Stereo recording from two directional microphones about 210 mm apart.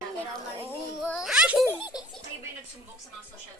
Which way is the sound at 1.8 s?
20° left (ahead or behind).